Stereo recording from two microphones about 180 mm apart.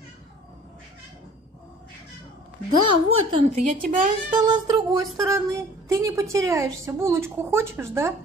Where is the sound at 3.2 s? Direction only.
35° right (ahead or behind).